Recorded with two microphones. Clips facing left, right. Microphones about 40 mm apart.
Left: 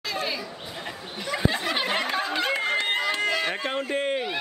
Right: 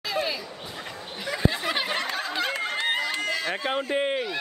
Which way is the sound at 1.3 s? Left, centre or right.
Centre.